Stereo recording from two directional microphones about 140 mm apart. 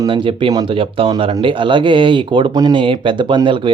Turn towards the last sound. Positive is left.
turn(degrees=-35)  # may be behind; listen again after turning